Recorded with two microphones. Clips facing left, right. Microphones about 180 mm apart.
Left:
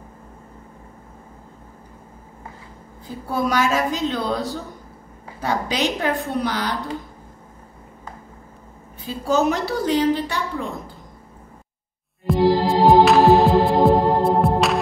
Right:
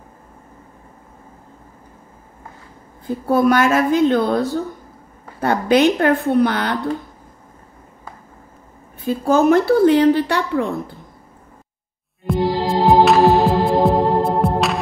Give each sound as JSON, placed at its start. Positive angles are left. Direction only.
{"t": 3.3, "sound": "a woman's voice", "side_deg": -55}
{"t": 9.0, "sound": "a woman's voice", "side_deg": -50}
{"t": 12.3, "sound": "heart sounds", "side_deg": 0}